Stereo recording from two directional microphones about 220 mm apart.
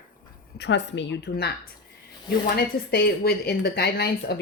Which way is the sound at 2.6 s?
45° left (ahead or behind).